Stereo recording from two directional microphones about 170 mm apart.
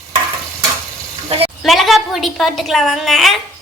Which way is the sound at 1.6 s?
Centre (ahead or behind).